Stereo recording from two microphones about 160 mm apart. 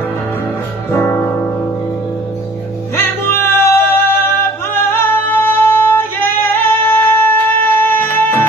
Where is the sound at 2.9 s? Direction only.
15° left (ahead or behind).